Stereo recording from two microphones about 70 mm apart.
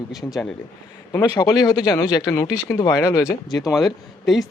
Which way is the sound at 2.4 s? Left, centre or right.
Left.